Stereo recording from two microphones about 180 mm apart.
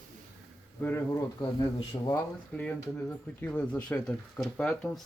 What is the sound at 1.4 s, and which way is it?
Speech, 20° left (ahead or behind).